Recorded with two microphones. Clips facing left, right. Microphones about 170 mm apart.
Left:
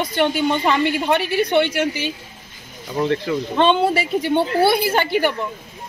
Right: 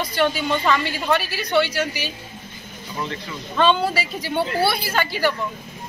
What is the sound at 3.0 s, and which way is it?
Speech, 60° left (ahead or behind).